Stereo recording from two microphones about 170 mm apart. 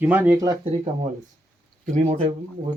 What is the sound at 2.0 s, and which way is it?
Speech, 35° right (ahead or behind).